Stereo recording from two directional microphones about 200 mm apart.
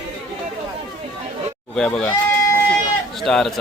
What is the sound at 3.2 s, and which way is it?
Speech, centre (ahead or behind).